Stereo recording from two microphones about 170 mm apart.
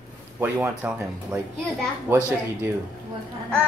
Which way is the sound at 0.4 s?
10° right (ahead or behind).